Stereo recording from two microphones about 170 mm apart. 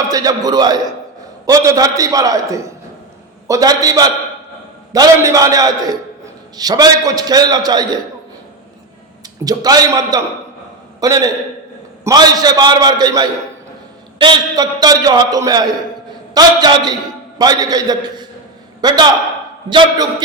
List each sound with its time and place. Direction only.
0.1 s a man's voice: 20° right (ahead or behind)
9.4 s a man's voice: 20° right (ahead or behind)